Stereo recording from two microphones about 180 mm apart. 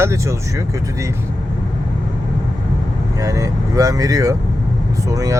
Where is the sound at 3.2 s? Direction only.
15° right (ahead or behind).